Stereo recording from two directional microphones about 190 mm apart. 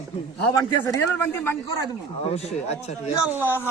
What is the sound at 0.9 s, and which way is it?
Speech, 10° left (ahead or behind).